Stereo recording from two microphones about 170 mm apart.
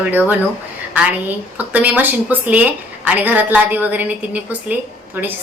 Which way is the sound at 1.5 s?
10° right (ahead or behind).